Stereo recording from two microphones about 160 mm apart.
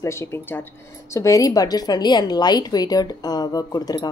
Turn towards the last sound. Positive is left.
turn(degrees=25)  # may be behind; listen again after turning